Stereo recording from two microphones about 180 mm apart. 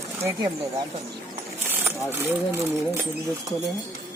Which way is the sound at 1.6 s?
10° right (ahead or behind).